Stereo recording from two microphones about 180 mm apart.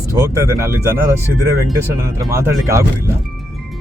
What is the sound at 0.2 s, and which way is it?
Speech, 15° right (ahead or behind).